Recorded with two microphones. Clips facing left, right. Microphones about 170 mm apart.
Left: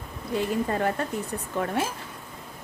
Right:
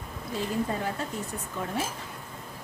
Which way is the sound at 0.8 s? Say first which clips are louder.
Left 6 dB; 60° left (ahead or behind).